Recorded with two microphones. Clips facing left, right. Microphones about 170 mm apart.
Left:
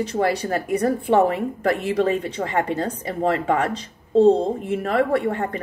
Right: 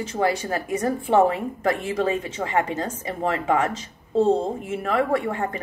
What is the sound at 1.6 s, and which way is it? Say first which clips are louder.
A woman's voice: left 2 dB; 35° left (ahead or behind).